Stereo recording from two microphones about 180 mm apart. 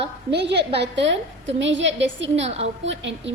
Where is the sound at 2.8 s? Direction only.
90° right.